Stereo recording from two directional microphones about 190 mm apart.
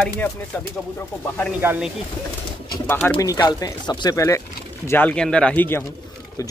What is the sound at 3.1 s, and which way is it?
Speech, 20° left (ahead or behind).